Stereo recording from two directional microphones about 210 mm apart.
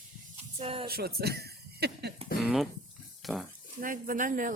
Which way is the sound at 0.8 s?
45° right (ahead or behind).